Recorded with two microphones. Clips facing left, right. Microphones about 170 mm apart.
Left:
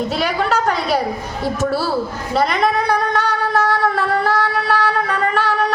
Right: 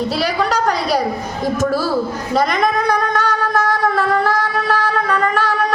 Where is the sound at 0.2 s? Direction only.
40° right (ahead or behind).